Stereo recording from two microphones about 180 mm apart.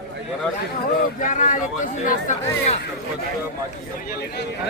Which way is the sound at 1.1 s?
45° left (ahead or behind).